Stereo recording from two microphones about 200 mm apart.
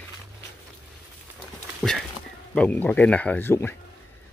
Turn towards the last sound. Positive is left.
turn(degrees=10)  # may be behind; listen again after turning